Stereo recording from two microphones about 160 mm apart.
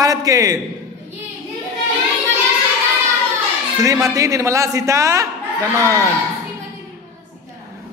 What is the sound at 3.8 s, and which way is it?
A man's voice, 20° right (ahead or behind).